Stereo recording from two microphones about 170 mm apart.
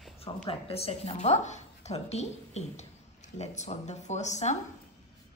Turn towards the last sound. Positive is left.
turn(degrees=45)  # may be behind; listen again after turning